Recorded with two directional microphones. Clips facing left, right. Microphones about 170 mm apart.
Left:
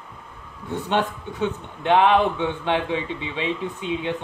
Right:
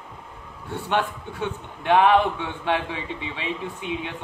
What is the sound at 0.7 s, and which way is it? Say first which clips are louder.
A man's voice: left 2 dB; 20° left (ahead or behind).